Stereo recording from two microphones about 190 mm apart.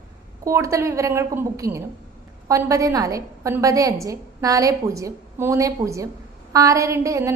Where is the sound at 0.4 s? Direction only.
15° right (ahead or behind).